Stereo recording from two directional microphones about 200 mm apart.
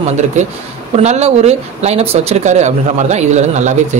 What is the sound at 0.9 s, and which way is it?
Speech, 35° right (ahead or behind).